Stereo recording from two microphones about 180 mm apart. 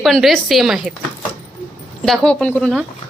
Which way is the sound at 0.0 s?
Centre (ahead or behind).